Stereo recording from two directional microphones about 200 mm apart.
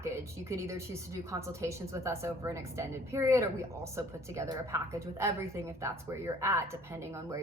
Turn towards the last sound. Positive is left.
turn(degrees=-15)  # may be behind; listen again after turning